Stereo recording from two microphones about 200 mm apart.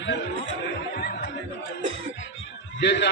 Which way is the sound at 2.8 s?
60° left (ahead or behind).